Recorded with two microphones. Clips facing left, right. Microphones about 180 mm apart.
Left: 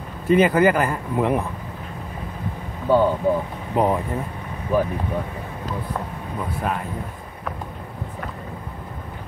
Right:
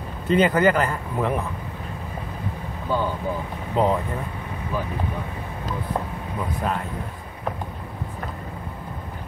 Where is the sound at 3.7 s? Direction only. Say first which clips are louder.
Left 1 dB; 15° left (ahead or behind).